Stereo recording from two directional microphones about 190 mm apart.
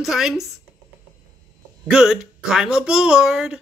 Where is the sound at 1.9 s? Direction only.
5° right (ahead or behind).